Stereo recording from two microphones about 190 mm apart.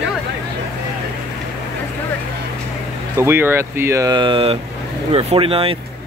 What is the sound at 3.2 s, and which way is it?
Speech, 10° right (ahead or behind).